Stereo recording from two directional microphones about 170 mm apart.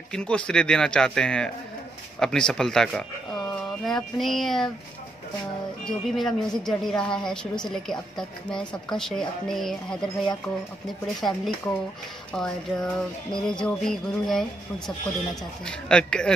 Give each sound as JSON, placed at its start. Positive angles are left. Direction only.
{"t": 0.1, "sound": "a woman's voice", "side_deg": 5}
{"t": 5.9, "sound": "a woman's voice", "side_deg": 0}
{"t": 15.6, "sound": "a woman's voice", "side_deg": 5}